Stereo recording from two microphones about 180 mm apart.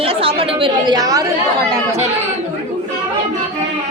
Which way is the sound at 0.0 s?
30° right (ahead or behind).